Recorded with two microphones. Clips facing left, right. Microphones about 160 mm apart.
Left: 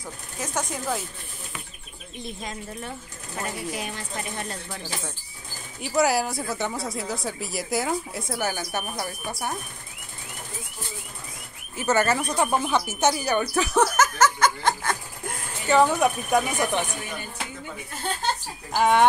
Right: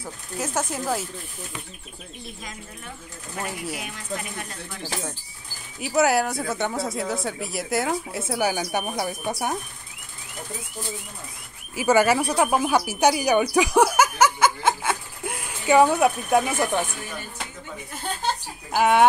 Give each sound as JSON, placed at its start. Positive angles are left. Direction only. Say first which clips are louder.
{"t": 0.0, "sound": "speech", "louder": "right 4 dB", "side_deg": -5}
{"t": 3.8, "sound": "speech", "louder": "even", "side_deg": 35}
{"t": 5.8, "sound": "speech", "louder": "right 2 dB", "side_deg": 0}
{"t": 11.7, "sound": "speech", "louder": "right 4 dB", "side_deg": -10}
{"t": 13.0, "sound": "snicker", "louder": "right 4 dB", "side_deg": -10}
{"t": 16.3, "sound": "speech", "louder": "right 2 dB", "side_deg": -5}
{"t": 18.2, "sound": "speech", "louder": "right 1 dB", "side_deg": -10}